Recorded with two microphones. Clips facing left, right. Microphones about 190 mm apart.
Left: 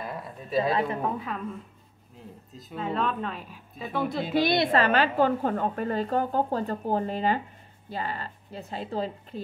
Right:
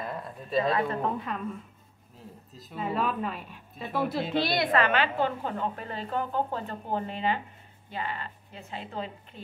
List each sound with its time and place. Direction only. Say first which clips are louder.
0.0 s a sound: even; 5° left (ahead or behind)
1.0 s speech: even; centre (ahead or behind)
2.5 s speech: left 1 dB; 5° right (ahead or behind)
4.3 s a woman's voice: left 4 dB; 15° left (ahead or behind)
4.6 s a woman's voice: left 2 dB; 30° left (ahead or behind)